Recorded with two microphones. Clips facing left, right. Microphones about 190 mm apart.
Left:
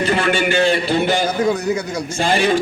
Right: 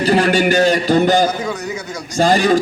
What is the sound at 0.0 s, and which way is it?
A man's voice, 35° right (ahead or behind).